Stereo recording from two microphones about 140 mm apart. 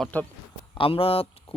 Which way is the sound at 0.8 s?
40° left (ahead or behind).